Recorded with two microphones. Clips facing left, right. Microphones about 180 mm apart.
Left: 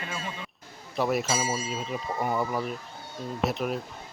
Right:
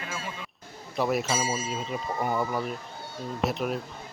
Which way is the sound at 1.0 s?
Centre (ahead or behind).